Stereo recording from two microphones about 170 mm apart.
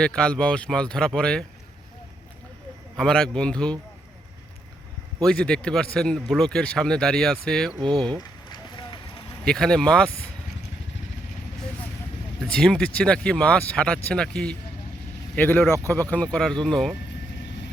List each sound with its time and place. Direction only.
0.0 s speech: 5° left (ahead or behind)
2.9 s speech: 5° left (ahead or behind)
5.2 s speech: 5° left (ahead or behind)
7.8 s speech: 25° right (ahead or behind)
8.2 s run: 25° left (ahead or behind)
9.4 s speech: 5° left (ahead or behind)
12.5 s speech: 5° left (ahead or behind)